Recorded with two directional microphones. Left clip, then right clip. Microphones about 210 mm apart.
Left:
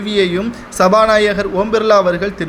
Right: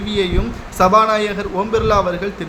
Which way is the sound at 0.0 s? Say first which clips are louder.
Left 4 dB; 20° left (ahead or behind).